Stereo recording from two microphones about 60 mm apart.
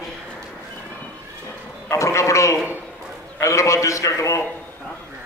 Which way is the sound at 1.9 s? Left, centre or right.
Left.